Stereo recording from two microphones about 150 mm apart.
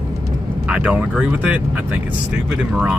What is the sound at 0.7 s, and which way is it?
Speech, 10° right (ahead or behind).